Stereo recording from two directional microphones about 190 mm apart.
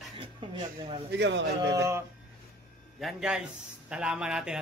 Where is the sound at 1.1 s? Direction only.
65° right (ahead or behind).